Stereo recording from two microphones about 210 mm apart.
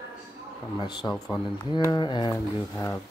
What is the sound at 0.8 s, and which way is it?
Speech, 20° left (ahead or behind).